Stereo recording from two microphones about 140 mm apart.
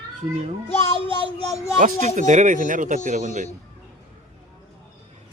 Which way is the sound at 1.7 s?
65° right (ahead or behind).